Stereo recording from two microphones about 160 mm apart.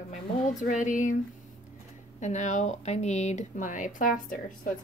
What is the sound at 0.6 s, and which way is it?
Speech, 50° left (ahead or behind).